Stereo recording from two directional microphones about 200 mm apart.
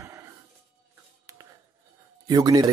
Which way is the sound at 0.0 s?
15° right (ahead or behind).